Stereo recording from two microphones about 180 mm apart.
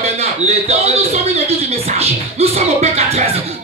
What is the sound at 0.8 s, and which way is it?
Speech, 35° right (ahead or behind).